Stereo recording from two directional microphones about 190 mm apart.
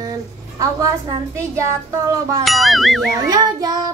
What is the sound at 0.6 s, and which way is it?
A woman's voice, 15° right (ahead or behind).